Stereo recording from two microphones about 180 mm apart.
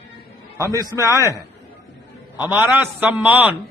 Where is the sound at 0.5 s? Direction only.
15° right (ahead or behind).